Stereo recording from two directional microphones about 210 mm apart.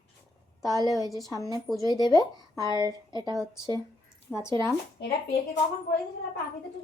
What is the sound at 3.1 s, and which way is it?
Speech, 20° right (ahead or behind).